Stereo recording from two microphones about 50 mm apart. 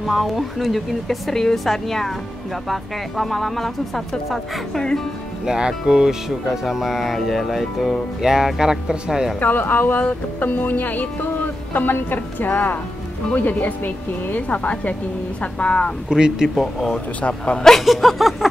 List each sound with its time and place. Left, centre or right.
0.0 s speech: centre
5.4 s speech: centre
9.4 s speech: left
16.1 s speech: centre
16.4 s speech: centre
17.2 s speech: left
17.6 s speech: centre
17.8 s speech: centre